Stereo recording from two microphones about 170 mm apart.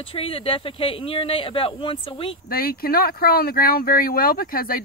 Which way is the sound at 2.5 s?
60° left (ahead or behind).